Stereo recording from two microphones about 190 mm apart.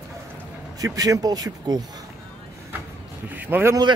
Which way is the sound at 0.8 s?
20° right (ahead or behind).